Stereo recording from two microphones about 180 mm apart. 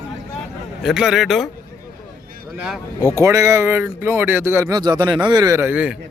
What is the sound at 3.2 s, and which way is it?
A man's voice, 15° right (ahead or behind).